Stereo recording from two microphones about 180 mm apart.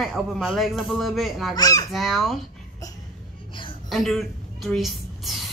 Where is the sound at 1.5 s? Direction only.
20° left (ahead or behind).